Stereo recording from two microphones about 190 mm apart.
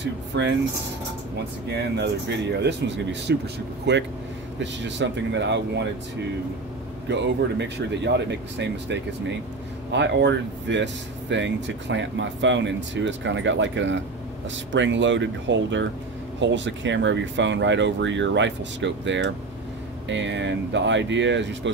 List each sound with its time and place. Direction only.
0.0 s speech: 65° right (ahead or behind)
1.7 s speech: 60° right (ahead or behind)
7.1 s speech: 65° right (ahead or behind)